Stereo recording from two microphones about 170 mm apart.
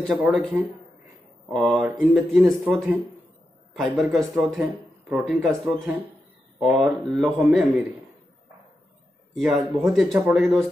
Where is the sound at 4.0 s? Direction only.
Centre (ahead or behind).